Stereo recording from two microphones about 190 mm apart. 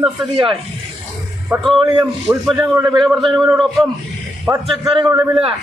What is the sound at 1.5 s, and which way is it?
A man's voice, centre (ahead or behind).